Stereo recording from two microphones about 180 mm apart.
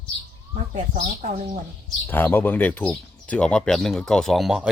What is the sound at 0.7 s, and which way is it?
Speech, 45° right (ahead or behind).